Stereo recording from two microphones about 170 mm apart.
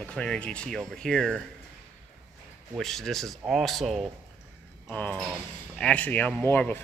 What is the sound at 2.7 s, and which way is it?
Speech, centre (ahead or behind).